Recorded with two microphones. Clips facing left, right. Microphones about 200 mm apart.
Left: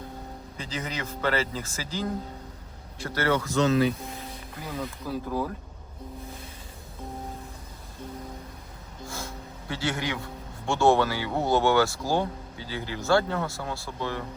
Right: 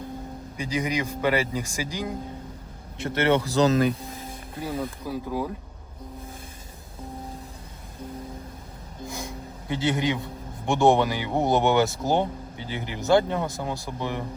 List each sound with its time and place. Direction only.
0.5 s speech: 15° right (ahead or behind)
3.0 s speech: 25° right (ahead or behind)
4.8 s speech: 15° right (ahead or behind)
9.0 s a sound: 15° right (ahead or behind)
10.7 s speech: 15° right (ahead or behind)